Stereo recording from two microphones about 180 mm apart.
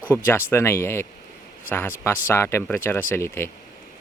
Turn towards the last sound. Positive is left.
turn(degrees=15)  # may be behind; listen again after turning